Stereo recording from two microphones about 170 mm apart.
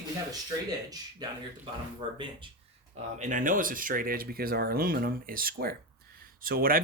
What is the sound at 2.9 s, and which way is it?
Speech, 45° right (ahead or behind).